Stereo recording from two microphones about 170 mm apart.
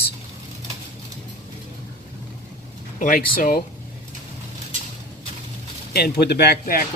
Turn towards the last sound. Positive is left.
turn(degrees=65)  # may be behind; listen again after turning